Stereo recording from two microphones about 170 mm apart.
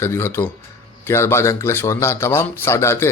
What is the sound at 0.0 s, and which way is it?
A man's voice, 15° left (ahead or behind).